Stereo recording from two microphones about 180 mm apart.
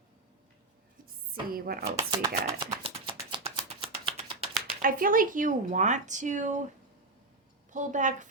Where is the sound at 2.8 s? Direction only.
30° right (ahead or behind).